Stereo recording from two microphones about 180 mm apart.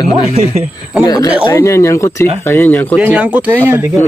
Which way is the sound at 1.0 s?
20° left (ahead or behind).